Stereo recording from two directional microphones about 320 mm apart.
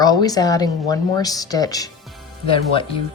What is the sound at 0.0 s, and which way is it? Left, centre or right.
Speech, centre.